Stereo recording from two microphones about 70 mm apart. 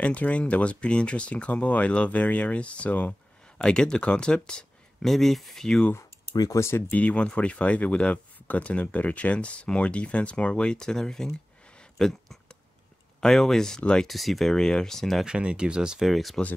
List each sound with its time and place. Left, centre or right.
0.0 s speech: centre
6.3 s speech: left
6.9 s speech: centre
15.2 s speech: centre